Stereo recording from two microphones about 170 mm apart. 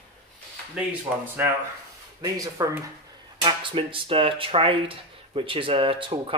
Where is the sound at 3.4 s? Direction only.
30° right (ahead or behind).